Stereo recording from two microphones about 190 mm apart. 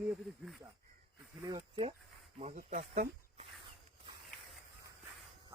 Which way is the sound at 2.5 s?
40° right (ahead or behind).